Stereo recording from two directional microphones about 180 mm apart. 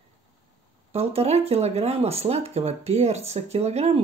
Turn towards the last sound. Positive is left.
turn(degrees=-35)  # may be behind; listen again after turning